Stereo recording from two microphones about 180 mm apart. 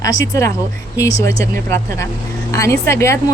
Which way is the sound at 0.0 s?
20° left (ahead or behind).